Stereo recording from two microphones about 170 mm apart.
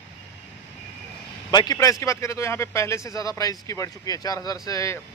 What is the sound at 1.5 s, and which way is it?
A man's voice, 25° left (ahead or behind).